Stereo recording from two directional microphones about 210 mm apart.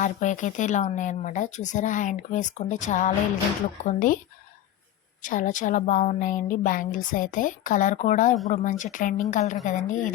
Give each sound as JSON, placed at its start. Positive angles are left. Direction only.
{"t": 0.0, "sound": "speech", "side_deg": 35}
{"t": 5.2, "sound": "speech", "side_deg": 40}